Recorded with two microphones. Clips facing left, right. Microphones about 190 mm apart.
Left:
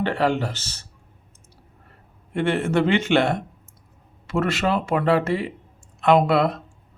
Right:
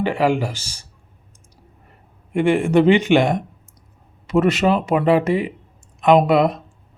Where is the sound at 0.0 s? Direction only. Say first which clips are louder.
Right 3 dB; 10° right (ahead or behind).